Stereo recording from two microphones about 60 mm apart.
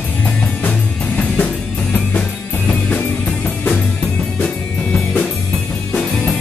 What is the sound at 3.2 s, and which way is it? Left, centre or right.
Music, centre.